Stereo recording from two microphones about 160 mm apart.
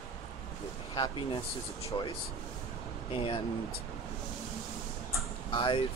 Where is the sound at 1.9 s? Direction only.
25° left (ahead or behind).